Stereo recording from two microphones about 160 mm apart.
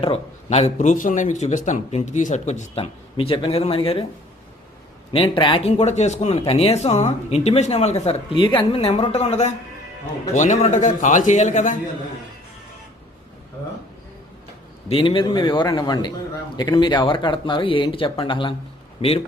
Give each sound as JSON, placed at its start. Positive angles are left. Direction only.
{"t": 0.0, "sound": "speech", "side_deg": 35}
{"t": 5.1, "sound": "speech", "side_deg": 35}
{"t": 14.8, "sound": "speech", "side_deg": 35}